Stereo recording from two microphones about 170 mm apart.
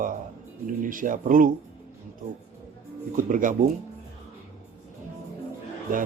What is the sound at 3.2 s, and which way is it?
Speech, 50° right (ahead or behind).